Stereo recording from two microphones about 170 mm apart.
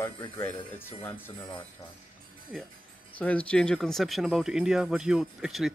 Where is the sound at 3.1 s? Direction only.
10° left (ahead or behind).